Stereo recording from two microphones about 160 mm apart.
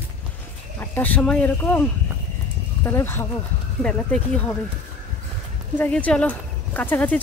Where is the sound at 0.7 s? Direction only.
10° left (ahead or behind).